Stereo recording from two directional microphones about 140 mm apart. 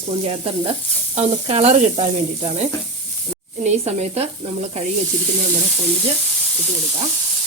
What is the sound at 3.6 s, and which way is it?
Frying, 50° right (ahead or behind).